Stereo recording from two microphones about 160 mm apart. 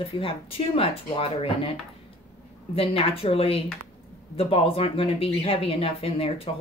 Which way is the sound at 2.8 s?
35° left (ahead or behind).